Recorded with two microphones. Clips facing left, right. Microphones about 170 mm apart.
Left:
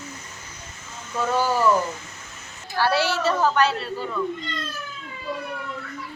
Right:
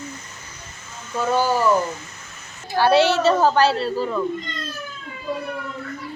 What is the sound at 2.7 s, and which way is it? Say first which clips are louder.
A child's voice: right 6 dB; 20° right (ahead or behind).